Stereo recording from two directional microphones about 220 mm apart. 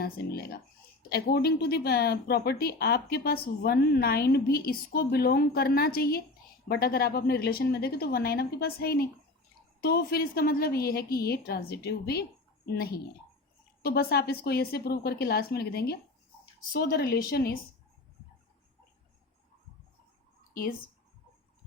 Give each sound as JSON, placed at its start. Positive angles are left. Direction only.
{"t": 0.0, "sound": "speech", "side_deg": 45}
{"t": 20.5, "sound": "speech", "side_deg": 40}